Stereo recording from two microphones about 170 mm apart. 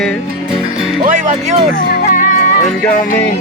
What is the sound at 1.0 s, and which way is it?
Speech, 50° right (ahead or behind).